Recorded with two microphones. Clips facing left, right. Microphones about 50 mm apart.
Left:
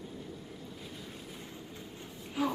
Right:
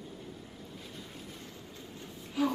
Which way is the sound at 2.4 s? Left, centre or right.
Centre.